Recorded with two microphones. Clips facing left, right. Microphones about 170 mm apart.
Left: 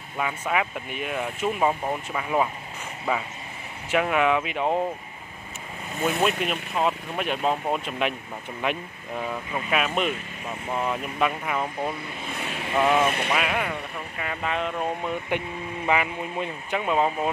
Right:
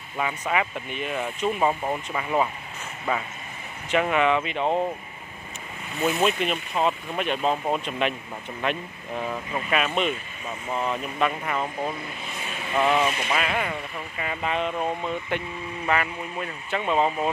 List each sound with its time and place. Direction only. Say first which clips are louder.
0.2 s speech: even; centre (ahead or behind)
3.9 s speech: even; 5° left (ahead or behind)
6.0 s speech: right 1 dB; 5° left (ahead or behind)
12.7 s speech: left 1 dB; 5° left (ahead or behind)
13.0 s a sound: left 1 dB; 55° left (ahead or behind)
13.3 s speech: even; 5° left (ahead or behind)
15.0 s speech: left 1 dB; 10° left (ahead or behind)